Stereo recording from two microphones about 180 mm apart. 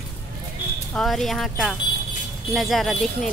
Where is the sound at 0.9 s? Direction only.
Centre (ahead or behind).